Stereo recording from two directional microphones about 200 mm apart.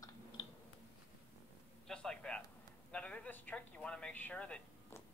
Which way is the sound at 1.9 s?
5° left (ahead or behind).